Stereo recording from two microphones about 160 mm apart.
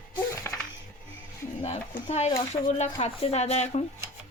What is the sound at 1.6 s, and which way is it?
A woman's voice, 40° left (ahead or behind).